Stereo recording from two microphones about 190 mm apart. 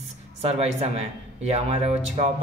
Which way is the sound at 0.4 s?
35° right (ahead or behind).